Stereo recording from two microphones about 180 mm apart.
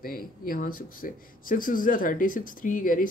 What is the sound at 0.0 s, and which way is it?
Speech, 55° left (ahead or behind).